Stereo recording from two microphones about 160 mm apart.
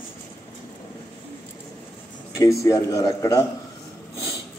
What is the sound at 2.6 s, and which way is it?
Speech, 20° left (ahead or behind).